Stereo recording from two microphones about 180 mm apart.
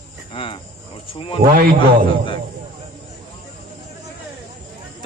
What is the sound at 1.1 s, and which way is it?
Speech, 30° left (ahead or behind).